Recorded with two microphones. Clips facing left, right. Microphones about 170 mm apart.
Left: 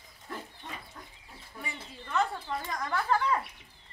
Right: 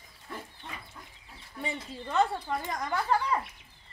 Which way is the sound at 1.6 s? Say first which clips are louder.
Right 7 dB; 25° right (ahead or behind).